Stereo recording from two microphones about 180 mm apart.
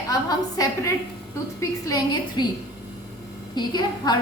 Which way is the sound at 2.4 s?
25° left (ahead or behind).